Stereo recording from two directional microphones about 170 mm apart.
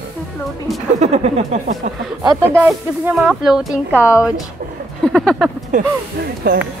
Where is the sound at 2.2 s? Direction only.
20° right (ahead or behind).